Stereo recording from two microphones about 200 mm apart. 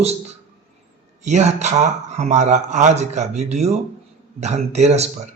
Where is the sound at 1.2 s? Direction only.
35° right (ahead or behind).